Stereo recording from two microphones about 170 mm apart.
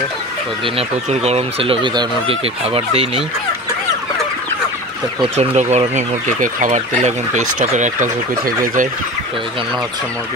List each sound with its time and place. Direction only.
0.7 s speech: 35° right (ahead or behind)
5.2 s speech: 35° right (ahead or behind)